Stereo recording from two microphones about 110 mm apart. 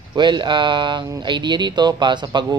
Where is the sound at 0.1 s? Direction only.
45° right (ahead or behind).